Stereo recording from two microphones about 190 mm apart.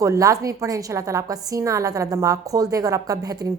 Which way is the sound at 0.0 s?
15° right (ahead or behind).